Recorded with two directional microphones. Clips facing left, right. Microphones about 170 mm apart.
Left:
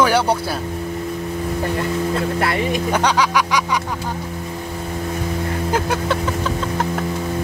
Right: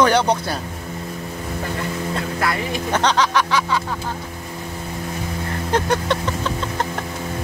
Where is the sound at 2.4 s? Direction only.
25° left (ahead or behind).